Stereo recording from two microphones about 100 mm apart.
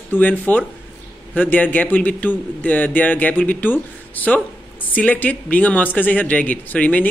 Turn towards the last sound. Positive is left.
turn(degrees=15)  # may be behind; listen again after turning